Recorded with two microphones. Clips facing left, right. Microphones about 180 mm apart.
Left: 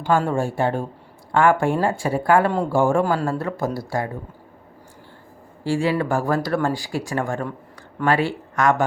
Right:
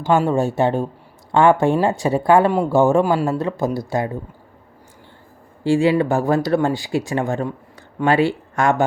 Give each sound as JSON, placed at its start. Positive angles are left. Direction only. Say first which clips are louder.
{"t": 0.3, "sound": "speech", "louder": "right 4 dB", "side_deg": -20}
{"t": 5.6, "sound": "speech", "louder": "right 5 dB", "side_deg": -25}